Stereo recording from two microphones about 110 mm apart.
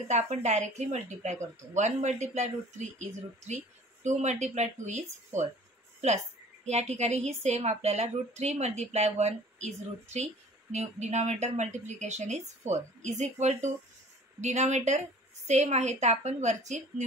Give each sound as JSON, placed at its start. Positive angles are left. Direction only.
{"t": 0.1, "sound": "a woman's voice", "side_deg": -90}